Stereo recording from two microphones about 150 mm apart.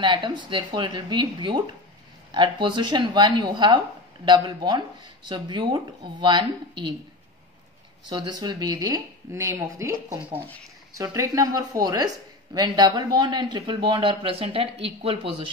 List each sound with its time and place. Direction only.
0.0 s speech: 30° right (ahead or behind)
8.0 s speech: 30° right (ahead or behind)